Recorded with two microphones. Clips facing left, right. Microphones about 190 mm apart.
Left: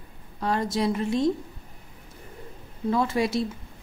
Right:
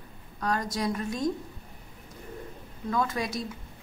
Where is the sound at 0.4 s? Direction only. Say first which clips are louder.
Left 4 dB; 25° left (ahead or behind).